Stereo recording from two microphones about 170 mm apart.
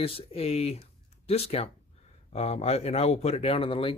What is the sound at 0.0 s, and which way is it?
Speech, 35° left (ahead or behind).